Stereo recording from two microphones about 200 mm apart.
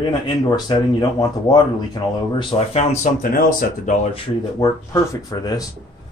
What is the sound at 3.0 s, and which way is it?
Speech, 45° left (ahead or behind).